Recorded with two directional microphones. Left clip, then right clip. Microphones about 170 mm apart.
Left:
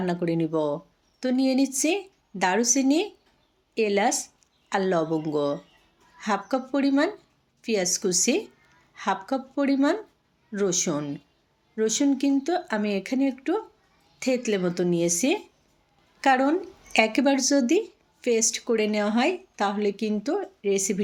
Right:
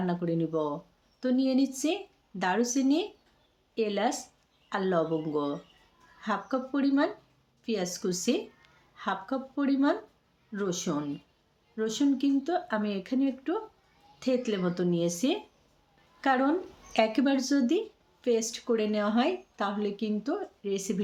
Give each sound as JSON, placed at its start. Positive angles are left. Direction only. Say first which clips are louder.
{"t": 0.0, "sound": "speech", "louder": "left 4 dB", "side_deg": 20}